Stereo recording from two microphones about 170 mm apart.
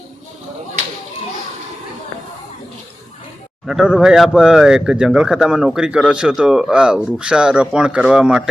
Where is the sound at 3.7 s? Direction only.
5° right (ahead or behind).